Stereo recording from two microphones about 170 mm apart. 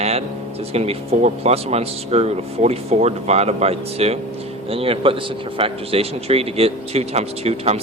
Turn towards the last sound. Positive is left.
turn(degrees=-40)  # may be behind; listen again after turning